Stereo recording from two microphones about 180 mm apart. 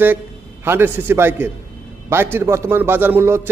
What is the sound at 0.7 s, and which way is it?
A man's voice, 10° right (ahead or behind).